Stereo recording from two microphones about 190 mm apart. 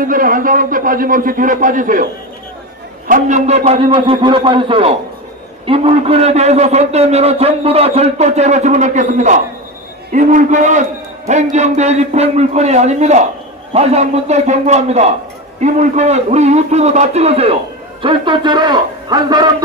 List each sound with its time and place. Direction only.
0.0 s a man's voice: 45° right (ahead or behind)
3.1 s a man's voice: 45° right (ahead or behind); by 19.5 s 25° right (ahead or behind)